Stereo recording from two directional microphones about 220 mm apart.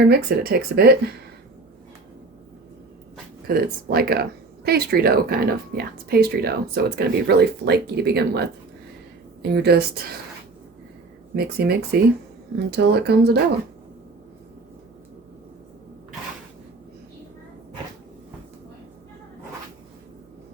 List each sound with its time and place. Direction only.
0.1 s speech: 45° right (ahead or behind)
3.4 s speech: 45° right (ahead or behind)
11.3 s speech: 45° right (ahead or behind)